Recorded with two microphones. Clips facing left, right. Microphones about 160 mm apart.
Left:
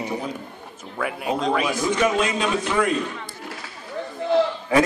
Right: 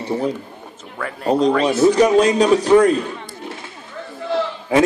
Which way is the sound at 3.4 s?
25° right (ahead or behind).